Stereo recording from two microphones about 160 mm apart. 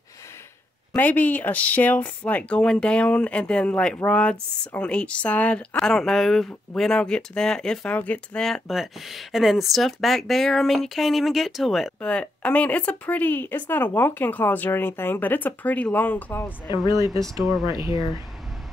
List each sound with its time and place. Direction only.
0.9 s speech: 10° left (ahead or behind)
16.6 s speech: 25° left (ahead or behind)
17.0 s speech: 20° right (ahead or behind)